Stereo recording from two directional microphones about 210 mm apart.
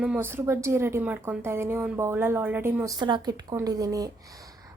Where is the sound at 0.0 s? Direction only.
10° right (ahead or behind).